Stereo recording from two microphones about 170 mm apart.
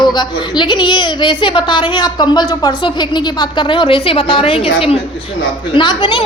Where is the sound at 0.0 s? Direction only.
25° left (ahead or behind).